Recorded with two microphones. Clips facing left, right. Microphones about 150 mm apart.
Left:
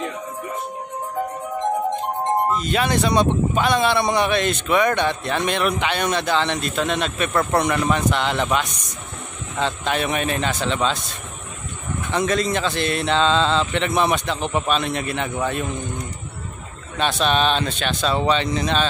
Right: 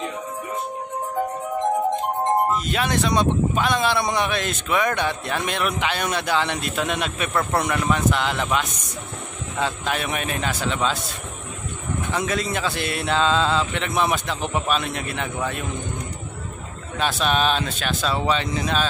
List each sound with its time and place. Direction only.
2.5 s speech: centre (ahead or behind)
12.1 s speech: 5° right (ahead or behind)
16.9 s speech: 5° right (ahead or behind)